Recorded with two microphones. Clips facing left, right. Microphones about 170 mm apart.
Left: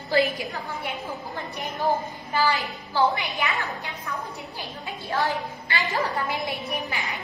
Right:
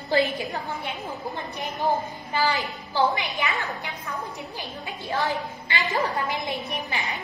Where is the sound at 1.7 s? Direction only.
20° right (ahead or behind).